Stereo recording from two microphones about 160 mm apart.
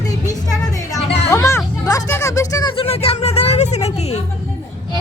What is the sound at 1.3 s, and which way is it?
Music, 20° left (ahead or behind).